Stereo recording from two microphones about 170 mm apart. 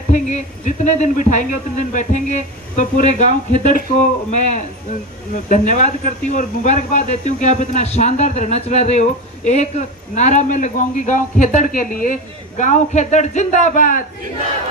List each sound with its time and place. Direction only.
0.1 s a man's voice: 45° left (ahead or behind)